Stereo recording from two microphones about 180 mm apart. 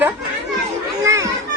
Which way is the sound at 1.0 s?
15° right (ahead or behind).